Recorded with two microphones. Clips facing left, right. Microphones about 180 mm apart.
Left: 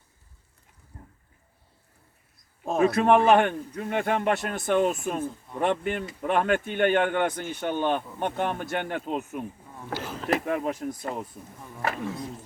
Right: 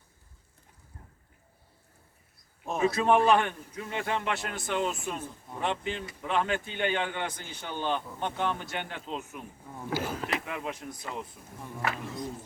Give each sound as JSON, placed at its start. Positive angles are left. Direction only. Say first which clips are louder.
{"t": 2.7, "sound": "a man's voice", "louder": "left 4 dB", "side_deg": 55}
{"t": 9.7, "sound": "a sound", "louder": "right 3 dB", "side_deg": -5}
{"t": 10.2, "sound": "a man's voice", "louder": "left 8 dB", "side_deg": 45}